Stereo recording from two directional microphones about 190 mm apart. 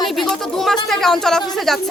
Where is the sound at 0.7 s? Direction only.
Centre (ahead or behind).